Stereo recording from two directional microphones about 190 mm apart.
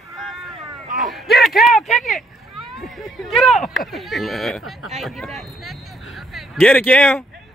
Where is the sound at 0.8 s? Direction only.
45° right (ahead or behind).